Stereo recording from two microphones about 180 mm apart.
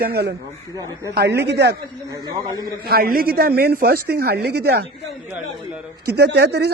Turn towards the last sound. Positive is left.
turn(degrees=-65)  # may be behind; listen again after turning